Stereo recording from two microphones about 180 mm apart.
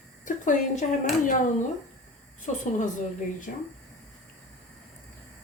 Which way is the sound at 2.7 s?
45° left (ahead or behind).